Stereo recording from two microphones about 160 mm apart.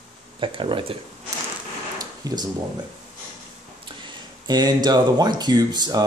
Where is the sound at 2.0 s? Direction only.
25° right (ahead or behind).